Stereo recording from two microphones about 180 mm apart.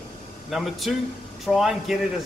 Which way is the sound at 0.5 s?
Centre (ahead or behind).